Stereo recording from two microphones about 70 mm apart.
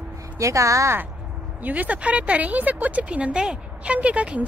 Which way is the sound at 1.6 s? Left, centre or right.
Right.